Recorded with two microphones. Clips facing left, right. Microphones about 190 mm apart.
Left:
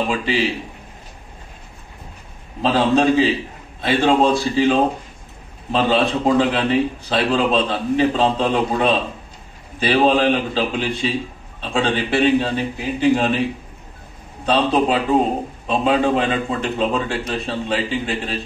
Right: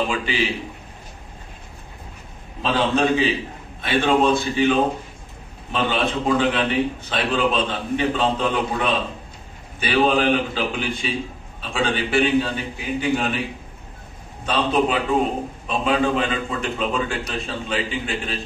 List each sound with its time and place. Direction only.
0.1 s a man's voice: 30° left (ahead or behind)
2.6 s a man's voice: 30° left (ahead or behind)
14.4 s a man's voice: 30° left (ahead or behind)